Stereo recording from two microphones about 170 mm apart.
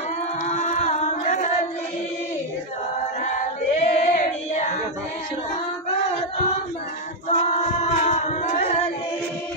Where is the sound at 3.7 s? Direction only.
40° left (ahead or behind).